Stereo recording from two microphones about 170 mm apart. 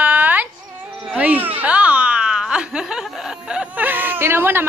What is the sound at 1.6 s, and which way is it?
Giggle, 10° right (ahead or behind).